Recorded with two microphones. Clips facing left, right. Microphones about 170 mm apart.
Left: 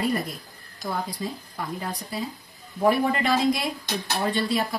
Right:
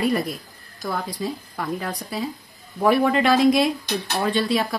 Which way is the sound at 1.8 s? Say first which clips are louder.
Right 3 dB; 80° right.